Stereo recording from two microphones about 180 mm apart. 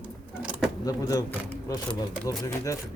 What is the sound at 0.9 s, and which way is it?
Speech, 20° left (ahead or behind).